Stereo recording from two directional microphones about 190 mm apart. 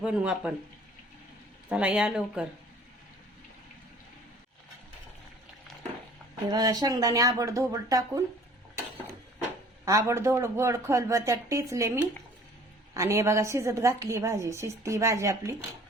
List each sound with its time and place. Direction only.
0.0 s speech: 5° right (ahead or behind)
1.7 s speech: 5° right (ahead or behind)
6.5 s speech: 20° right (ahead or behind)
9.8 s a woman's voice: 15° right (ahead or behind)